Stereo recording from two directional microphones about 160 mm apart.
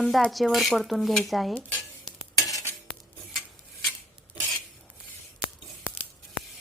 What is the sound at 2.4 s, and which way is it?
Stir, 20° left (ahead or behind).